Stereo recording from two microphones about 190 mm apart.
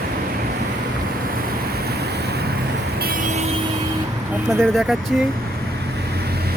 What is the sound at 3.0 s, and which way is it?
Vehicle, 45° right (ahead or behind).